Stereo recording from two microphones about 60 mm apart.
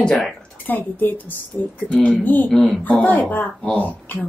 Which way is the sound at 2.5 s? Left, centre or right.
Centre.